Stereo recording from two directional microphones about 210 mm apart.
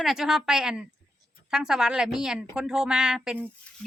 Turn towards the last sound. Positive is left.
turn(degrees=5)  # may be behind; listen again after turning